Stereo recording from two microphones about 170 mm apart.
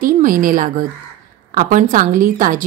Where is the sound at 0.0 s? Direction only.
55° right (ahead or behind).